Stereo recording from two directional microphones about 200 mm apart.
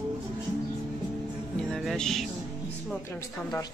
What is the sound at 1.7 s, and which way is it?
Music, centre (ahead or behind).